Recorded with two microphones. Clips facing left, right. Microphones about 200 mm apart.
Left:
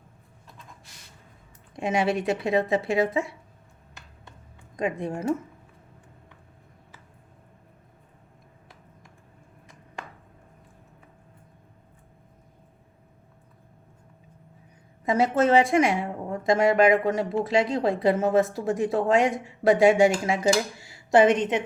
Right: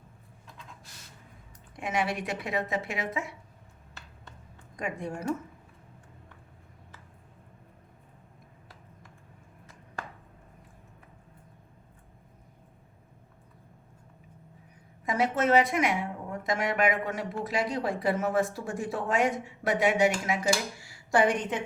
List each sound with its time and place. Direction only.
1.7 s a woman's voice: 25° left (ahead or behind)
4.8 s a woman's voice: 20° left (ahead or behind)
15.0 s a woman's voice: 25° left (ahead or behind)